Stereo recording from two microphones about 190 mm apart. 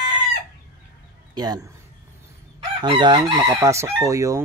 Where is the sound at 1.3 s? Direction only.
20° right (ahead or behind).